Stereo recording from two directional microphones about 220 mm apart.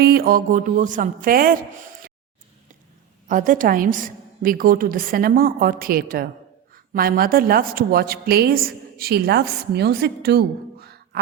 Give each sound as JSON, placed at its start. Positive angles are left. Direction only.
{"t": 0.0, "sound": "a woman's voice", "side_deg": -40}
{"t": 3.2, "sound": "a woman's voice", "side_deg": -35}